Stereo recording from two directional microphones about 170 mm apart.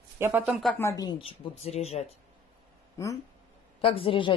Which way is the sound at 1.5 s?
40° left (ahead or behind).